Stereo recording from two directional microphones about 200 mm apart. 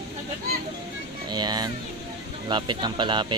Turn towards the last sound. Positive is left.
turn(degrees=-25)  # may be behind; listen again after turning